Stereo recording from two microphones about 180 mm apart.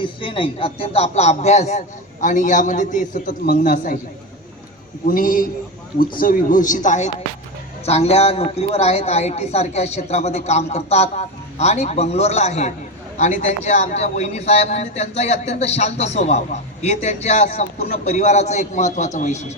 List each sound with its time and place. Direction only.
0.0 s a man's voice: 30° left (ahead or behind); by 3.9 s 50° left (ahead or behind)
5.0 s a man's voice: 50° left (ahead or behind)